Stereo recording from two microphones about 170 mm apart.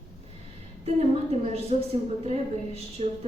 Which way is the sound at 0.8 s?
40° right (ahead or behind).